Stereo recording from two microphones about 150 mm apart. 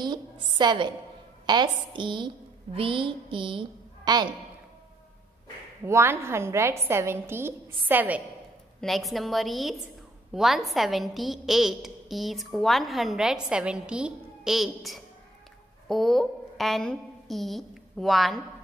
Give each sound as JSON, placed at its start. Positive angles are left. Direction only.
{"t": 0.0, "sound": "a woman's voice", "side_deg": -30}
{"t": 5.9, "sound": "a woman's voice", "side_deg": -15}
{"t": 8.8, "sound": "a woman's voice", "side_deg": 0}